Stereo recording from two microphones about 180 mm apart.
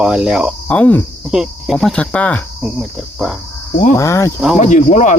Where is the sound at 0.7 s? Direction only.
10° left (ahead or behind).